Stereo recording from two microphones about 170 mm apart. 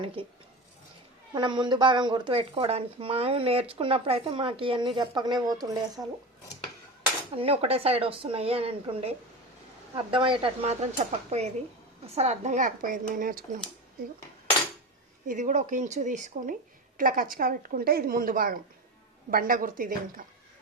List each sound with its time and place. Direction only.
0.2 s speech: 30° right (ahead or behind)
6.0 s speech: 15° right (ahead or behind)
7.3 s speech: 35° right (ahead or behind); by 13.4 s 55° right (ahead or behind)
15.3 s speech: 45° right (ahead or behind)